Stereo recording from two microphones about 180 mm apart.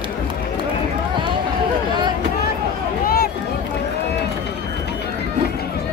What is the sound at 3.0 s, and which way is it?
Run, 55° left (ahead or behind).